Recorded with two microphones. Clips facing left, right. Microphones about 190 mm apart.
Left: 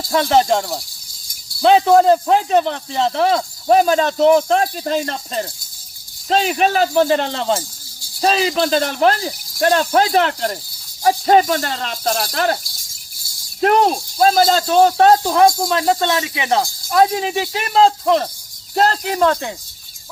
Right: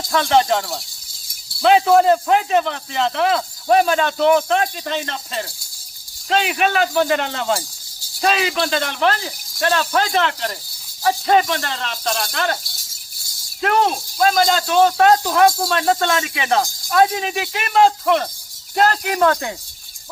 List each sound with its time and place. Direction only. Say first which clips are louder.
0.1 s speech: left 1 dB; 40° left (ahead or behind)
1.6 s speech: left 2 dB; 30° left (ahead or behind)
13.6 s speech: left 4 dB; 40° left (ahead or behind); by 19.5 s 20° left (ahead or behind)